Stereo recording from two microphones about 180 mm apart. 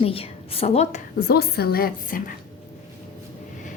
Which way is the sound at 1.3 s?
60° left (ahead or behind).